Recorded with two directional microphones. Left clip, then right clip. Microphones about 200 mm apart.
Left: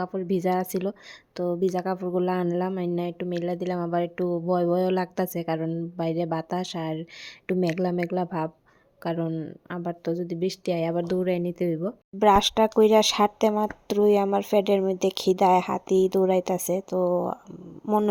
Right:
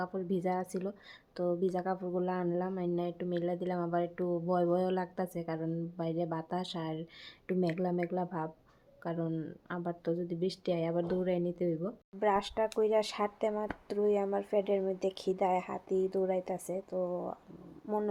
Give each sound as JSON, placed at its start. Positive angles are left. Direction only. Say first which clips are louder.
{"t": 0.0, "sound": "speech", "louder": "left 8 dB", "side_deg": 35}
{"t": 12.2, "sound": "speech", "louder": "left 11 dB", "side_deg": 55}